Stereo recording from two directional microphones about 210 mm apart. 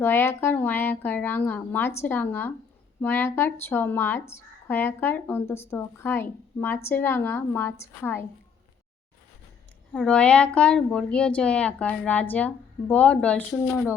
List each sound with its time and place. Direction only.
0.0 s a woman's voice: 10° left (ahead or behind)
9.9 s a woman's voice: 5° left (ahead or behind)